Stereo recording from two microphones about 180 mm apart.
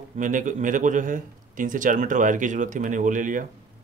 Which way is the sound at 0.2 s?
45° right (ahead or behind).